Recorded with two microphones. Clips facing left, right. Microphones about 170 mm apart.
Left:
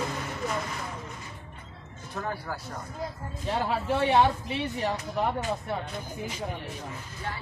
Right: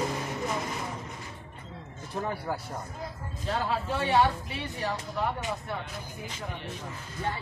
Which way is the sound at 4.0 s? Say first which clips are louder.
Left 2 dB; 20° left (ahead or behind).